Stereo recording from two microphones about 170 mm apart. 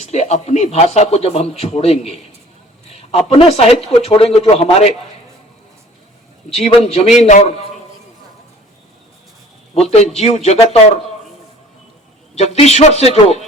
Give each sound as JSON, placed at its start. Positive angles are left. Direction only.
{"t": 0.0, "sound": "a man's voice", "side_deg": 40}
{"t": 6.5, "sound": "a man's voice", "side_deg": 40}
{"t": 9.7, "sound": "a man's voice", "side_deg": 40}
{"t": 12.3, "sound": "a man's voice", "side_deg": 40}